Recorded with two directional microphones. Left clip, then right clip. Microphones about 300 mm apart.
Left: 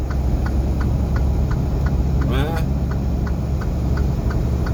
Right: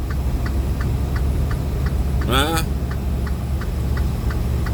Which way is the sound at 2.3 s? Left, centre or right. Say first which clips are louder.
Right 7 dB; right.